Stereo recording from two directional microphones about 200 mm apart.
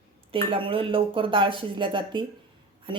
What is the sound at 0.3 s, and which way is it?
Speech, 25° right (ahead or behind).